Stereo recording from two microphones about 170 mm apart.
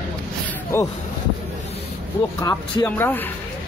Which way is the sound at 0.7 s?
15° left (ahead or behind).